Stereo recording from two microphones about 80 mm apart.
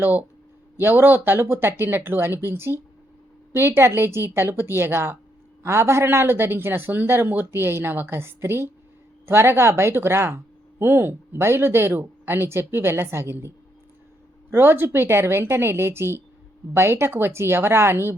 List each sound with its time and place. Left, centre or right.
0.0 s speech: right
14.5 s speech: right